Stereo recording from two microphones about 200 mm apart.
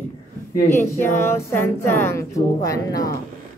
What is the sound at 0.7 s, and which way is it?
A woman's voice, 10° left (ahead or behind).